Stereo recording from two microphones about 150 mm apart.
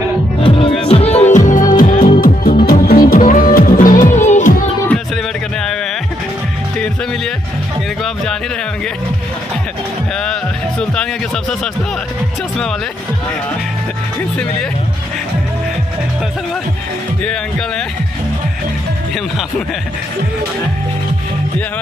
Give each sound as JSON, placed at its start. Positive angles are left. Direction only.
{"t": 0.4, "sound": "music", "side_deg": 35}
{"t": 2.0, "sound": "music", "side_deg": 35}
{"t": 2.6, "sound": "music", "side_deg": 85}
{"t": 4.8, "sound": "music", "side_deg": 5}
{"t": 17.2, "sound": "speech", "side_deg": 5}